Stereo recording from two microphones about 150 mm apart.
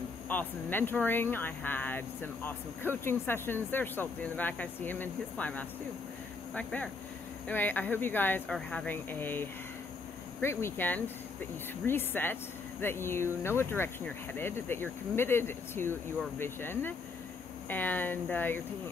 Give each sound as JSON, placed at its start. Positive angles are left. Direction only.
{"t": 0.3, "sound": "speech", "side_deg": 10}